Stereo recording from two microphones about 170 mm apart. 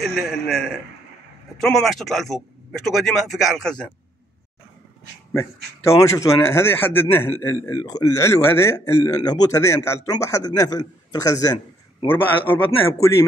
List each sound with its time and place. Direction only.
0.0 s speech: centre (ahead or behind)
5.3 s a man's voice: 20° left (ahead or behind)
12.1 s a man's voice: 10° left (ahead or behind)